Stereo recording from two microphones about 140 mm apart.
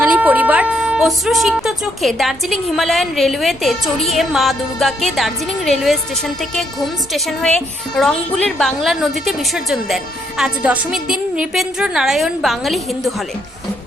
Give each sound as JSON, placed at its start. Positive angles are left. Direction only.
{"t": 0.0, "sound": "speech", "side_deg": -10}